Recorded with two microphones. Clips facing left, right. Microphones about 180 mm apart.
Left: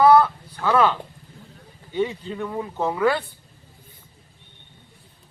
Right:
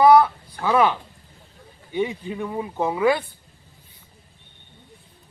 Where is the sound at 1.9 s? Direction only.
15° right (ahead or behind).